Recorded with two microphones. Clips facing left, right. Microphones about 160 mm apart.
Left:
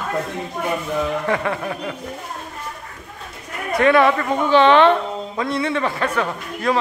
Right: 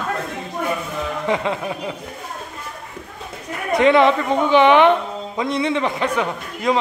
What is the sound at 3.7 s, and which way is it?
A woman's voice, 20° right (ahead or behind).